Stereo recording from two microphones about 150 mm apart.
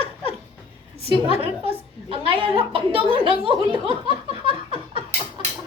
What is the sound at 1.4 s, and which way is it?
A woman's voice, 40° right (ahead or behind).